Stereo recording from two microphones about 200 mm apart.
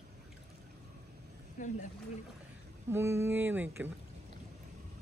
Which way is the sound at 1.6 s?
40° left (ahead or behind).